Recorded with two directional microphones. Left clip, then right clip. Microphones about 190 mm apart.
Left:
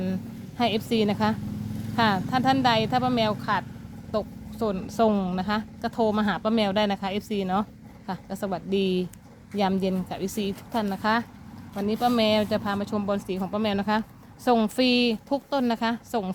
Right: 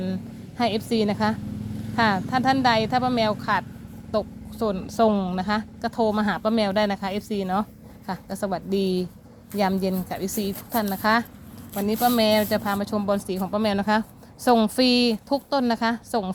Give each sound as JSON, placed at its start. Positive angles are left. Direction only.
{"t": 0.0, "sound": "a woman's voice", "side_deg": -5}